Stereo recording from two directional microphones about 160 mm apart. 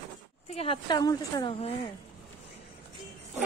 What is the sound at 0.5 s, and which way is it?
A woman's voice, 35° left (ahead or behind).